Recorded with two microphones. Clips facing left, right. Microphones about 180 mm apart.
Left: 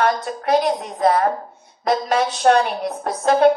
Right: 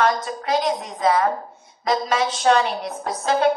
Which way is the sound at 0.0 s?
60° left (ahead or behind).